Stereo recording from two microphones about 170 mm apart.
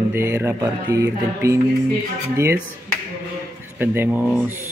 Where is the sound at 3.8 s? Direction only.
10° right (ahead or behind).